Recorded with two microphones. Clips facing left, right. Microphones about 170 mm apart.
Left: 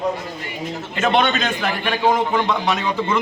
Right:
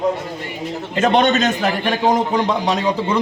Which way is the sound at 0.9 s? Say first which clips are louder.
Right 4 dB; 35° right (ahead or behind).